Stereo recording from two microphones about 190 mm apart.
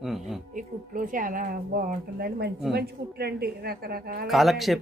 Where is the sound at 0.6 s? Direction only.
45° right (ahead or behind).